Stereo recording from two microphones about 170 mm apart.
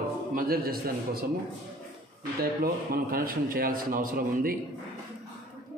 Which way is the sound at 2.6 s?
60° right (ahead or behind).